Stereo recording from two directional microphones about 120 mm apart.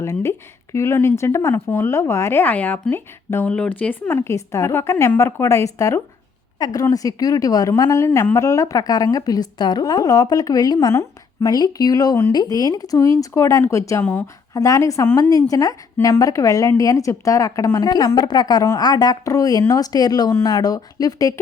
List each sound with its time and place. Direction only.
0.0 s a woman's voice: 25° left (ahead or behind)